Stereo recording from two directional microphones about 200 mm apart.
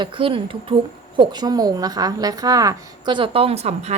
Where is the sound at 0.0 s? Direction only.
25° right (ahead or behind).